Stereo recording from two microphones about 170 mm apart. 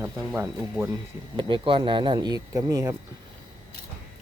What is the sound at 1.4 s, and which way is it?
Speech, 30° right (ahead or behind).